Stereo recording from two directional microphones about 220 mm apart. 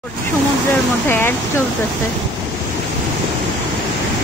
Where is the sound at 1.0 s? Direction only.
10° left (ahead or behind).